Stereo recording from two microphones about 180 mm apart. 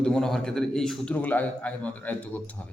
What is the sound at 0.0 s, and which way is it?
A man's voice, centre (ahead or behind).